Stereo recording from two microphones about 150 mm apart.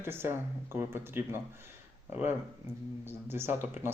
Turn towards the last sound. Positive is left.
turn(degrees=-15)  # may be behind; listen again after turning